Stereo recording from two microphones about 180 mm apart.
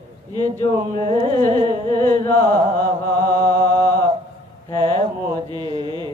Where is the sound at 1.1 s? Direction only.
25° right (ahead or behind).